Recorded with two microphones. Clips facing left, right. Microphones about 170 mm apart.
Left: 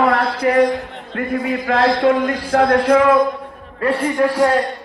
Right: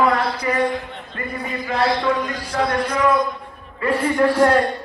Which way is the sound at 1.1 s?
90° left.